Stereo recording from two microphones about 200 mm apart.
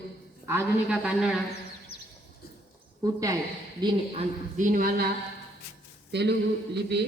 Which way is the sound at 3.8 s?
20° right (ahead or behind).